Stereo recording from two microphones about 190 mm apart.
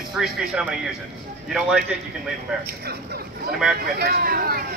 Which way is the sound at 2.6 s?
55° right (ahead or behind).